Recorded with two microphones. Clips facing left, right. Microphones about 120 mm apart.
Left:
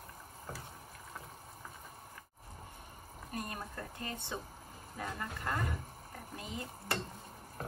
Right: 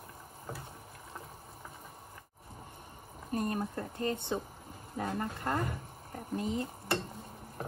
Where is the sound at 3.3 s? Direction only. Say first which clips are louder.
Right 9 dB; 35° right (ahead or behind).